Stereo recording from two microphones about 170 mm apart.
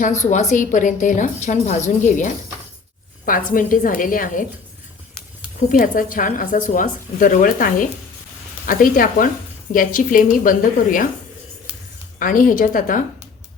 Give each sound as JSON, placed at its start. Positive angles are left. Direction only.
{"t": 0.2, "sound": "a woman's voice", "side_deg": 45}
{"t": 5.5, "sound": "a woman's voice", "side_deg": 50}
{"t": 12.2, "sound": "a woman's voice", "side_deg": 55}